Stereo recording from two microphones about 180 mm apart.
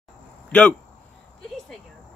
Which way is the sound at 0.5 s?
10° left (ahead or behind).